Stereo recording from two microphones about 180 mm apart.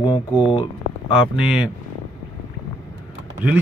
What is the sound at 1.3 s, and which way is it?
Speech, 5° right (ahead or behind).